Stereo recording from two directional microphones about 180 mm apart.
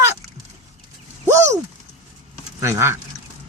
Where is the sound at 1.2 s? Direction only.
15° right (ahead or behind).